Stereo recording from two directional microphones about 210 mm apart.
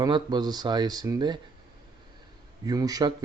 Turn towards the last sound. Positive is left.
turn(degrees=-20)  # may be behind; listen again after turning